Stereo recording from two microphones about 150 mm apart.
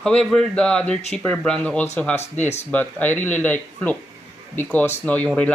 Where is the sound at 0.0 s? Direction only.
5° left (ahead or behind).